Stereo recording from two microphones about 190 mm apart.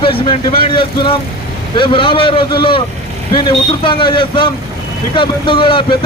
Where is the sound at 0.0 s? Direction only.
25° left (ahead or behind).